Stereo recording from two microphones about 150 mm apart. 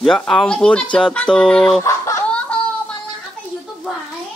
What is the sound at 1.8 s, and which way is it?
Chicken, 20° left (ahead or behind).